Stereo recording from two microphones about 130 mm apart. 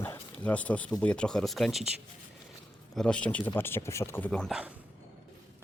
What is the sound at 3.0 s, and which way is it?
Speech, 10° left (ahead or behind).